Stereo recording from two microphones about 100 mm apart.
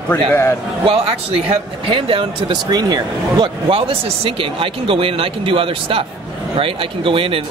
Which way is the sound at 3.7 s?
65° right (ahead or behind).